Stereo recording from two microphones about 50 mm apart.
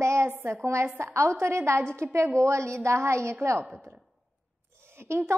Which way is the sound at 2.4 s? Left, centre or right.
Right.